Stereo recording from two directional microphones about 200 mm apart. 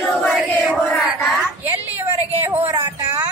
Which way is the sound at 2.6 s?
20° right (ahead or behind).